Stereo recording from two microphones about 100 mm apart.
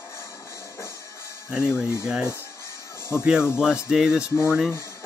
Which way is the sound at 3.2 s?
10° right (ahead or behind).